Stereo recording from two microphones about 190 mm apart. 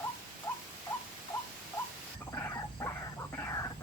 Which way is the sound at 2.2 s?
15° left (ahead or behind).